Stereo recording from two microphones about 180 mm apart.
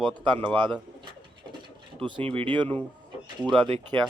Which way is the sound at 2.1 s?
30° right (ahead or behind).